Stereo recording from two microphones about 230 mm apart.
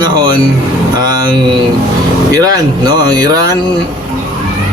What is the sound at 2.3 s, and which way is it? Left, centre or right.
Speech, centre.